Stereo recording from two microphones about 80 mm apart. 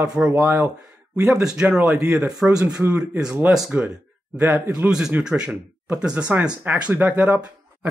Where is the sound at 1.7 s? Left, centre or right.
Centre.